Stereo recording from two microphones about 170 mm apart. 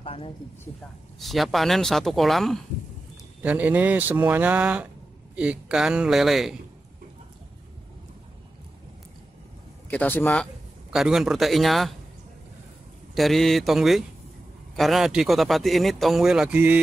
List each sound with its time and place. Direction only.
0.0 s a sound: 35° left (ahead or behind)
1.2 s speech: centre (ahead or behind)
3.4 s speech: 10° right (ahead or behind)
9.8 s speech: 10° left (ahead or behind)
10.3 s speech: centre (ahead or behind)
13.1 s speech: centre (ahead or behind)